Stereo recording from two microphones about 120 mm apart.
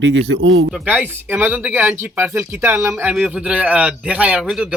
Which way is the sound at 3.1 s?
5° right (ahead or behind).